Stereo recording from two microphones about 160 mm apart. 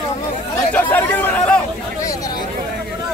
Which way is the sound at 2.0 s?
20° left (ahead or behind).